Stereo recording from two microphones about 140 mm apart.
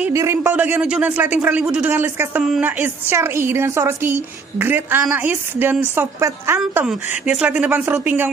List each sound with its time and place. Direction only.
0.0 s a woman's voice: 20° right (ahead or behind)
6.9 s a woman's voice: 5° right (ahead or behind)